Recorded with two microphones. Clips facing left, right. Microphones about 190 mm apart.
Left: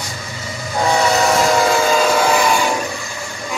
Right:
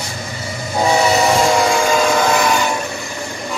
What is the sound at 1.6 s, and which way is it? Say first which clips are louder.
Train: even; 5° left (ahead or behind).